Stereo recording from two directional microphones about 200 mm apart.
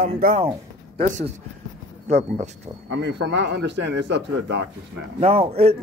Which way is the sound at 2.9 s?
65° right (ahead or behind).